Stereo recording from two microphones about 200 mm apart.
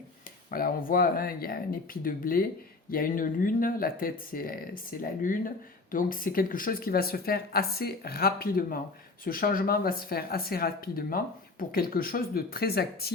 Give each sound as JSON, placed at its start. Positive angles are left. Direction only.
{"t": 0.5, "sound": "speech", "side_deg": 45}